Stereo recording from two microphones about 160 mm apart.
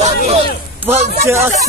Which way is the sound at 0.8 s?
15° right (ahead or behind).